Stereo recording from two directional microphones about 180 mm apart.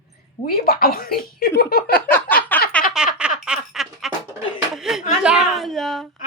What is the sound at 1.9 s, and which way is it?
Speech, 10° left (ahead or behind).